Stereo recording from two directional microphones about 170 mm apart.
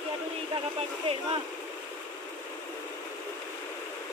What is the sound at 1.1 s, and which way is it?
Speech, 35° right (ahead or behind).